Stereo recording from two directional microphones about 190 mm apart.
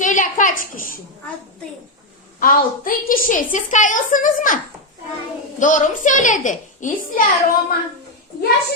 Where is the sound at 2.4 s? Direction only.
45° left (ahead or behind).